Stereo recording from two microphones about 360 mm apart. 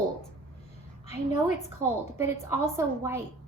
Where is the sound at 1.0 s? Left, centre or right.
Centre.